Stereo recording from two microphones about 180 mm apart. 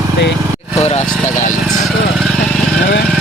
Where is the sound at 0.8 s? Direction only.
35° left (ahead or behind).